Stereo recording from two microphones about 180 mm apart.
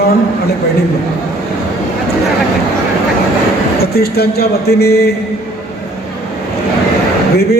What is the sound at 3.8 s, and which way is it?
A man's voice, 60° left (ahead or behind).